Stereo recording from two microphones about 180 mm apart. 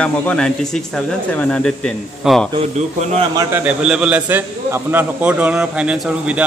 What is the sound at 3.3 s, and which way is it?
A man's voice, 10° right (ahead or behind).